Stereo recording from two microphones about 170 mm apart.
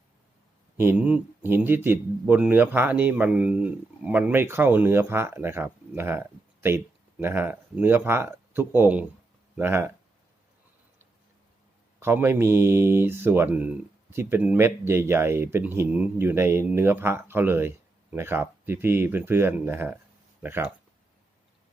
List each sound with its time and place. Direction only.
0.8 s speech: 10° right (ahead or behind)
11.9 s speech: 15° right (ahead or behind)